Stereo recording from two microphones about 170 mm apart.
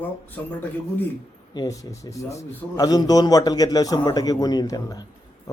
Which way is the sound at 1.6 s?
20° left (ahead or behind).